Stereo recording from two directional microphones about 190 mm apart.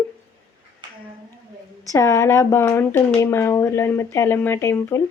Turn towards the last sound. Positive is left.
turn(degrees=15)  # may be behind; listen again after turning